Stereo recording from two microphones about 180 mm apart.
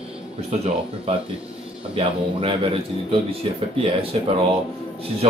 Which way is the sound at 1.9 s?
30° right (ahead or behind).